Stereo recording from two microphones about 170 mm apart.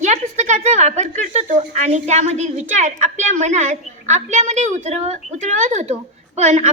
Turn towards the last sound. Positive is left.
turn(degrees=-40)  # may be behind; listen again after turning